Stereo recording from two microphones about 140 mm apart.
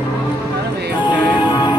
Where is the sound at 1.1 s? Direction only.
30° left (ahead or behind).